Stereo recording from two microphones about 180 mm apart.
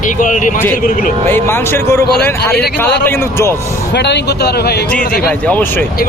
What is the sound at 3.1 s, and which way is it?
Speech, 15° left (ahead or behind).